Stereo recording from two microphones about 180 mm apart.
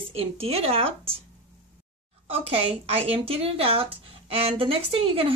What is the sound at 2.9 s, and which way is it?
Speech, 35° right (ahead or behind).